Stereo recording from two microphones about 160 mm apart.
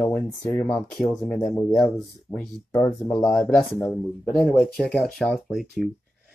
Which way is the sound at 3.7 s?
15° left (ahead or behind).